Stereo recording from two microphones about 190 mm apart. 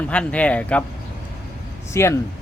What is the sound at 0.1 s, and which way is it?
Speech, 5° left (ahead or behind).